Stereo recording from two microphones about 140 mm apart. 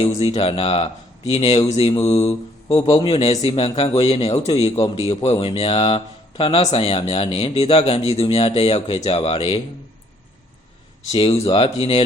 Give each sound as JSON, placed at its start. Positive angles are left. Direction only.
{"t": 0.0, "sound": "a man's voice", "side_deg": 50}
{"t": 3.2, "sound": "a man's voice", "side_deg": 50}
{"t": 11.1, "sound": "speech", "side_deg": 45}